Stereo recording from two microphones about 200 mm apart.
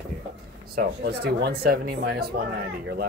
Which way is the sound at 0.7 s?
55° right (ahead or behind).